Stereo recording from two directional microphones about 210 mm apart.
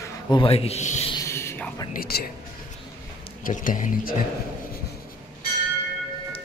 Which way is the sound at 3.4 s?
40° left (ahead or behind).